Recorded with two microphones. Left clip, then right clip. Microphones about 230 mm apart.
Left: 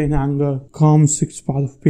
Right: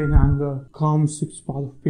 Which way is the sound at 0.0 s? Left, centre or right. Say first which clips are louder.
Left 4 dB; left.